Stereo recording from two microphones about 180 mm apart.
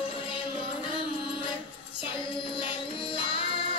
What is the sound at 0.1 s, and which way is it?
Music, 30° left (ahead or behind).